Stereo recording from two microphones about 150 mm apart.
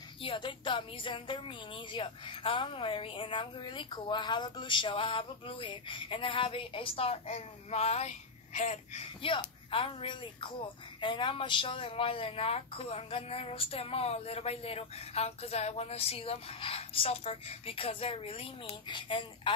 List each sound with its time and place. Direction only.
0.2 s speech: 35° left (ahead or behind); by 9.0 s 50° left (ahead or behind)
9.2 s speech: 35° left (ahead or behind)